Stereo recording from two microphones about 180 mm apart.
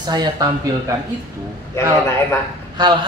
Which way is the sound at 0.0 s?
25° right (ahead or behind).